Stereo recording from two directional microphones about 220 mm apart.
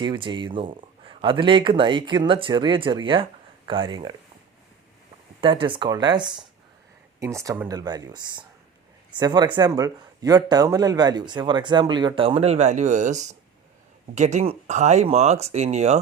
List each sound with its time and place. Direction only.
0.0 s speech: 20° right (ahead or behind)
5.4 s speech: 20° right (ahead or behind)